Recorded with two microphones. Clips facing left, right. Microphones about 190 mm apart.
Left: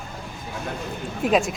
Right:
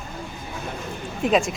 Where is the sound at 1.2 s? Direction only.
5° left (ahead or behind).